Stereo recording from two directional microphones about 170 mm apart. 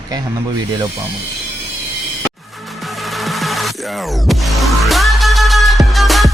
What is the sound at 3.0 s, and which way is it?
Music, centre (ahead or behind).